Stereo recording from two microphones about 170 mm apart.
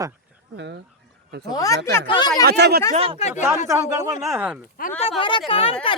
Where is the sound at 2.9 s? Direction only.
35° right (ahead or behind).